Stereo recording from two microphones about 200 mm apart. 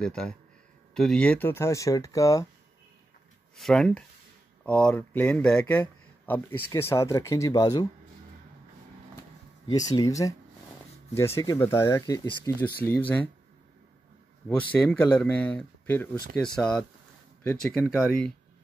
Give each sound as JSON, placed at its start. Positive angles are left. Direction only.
{"t": 0.0, "sound": "speech", "side_deg": 5}
{"t": 3.5, "sound": "speech", "side_deg": 0}
{"t": 9.7, "sound": "speech", "side_deg": 20}
{"t": 14.7, "sound": "speech", "side_deg": 5}
{"t": 17.8, "sound": "speech", "side_deg": -5}